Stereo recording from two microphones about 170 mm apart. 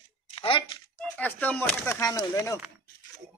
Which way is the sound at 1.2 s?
10° left (ahead or behind).